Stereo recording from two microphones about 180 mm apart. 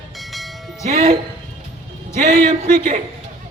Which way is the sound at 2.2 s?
45° right (ahead or behind).